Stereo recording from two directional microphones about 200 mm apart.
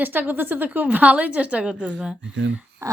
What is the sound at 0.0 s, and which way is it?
A woman's voice, 10° right (ahead or behind).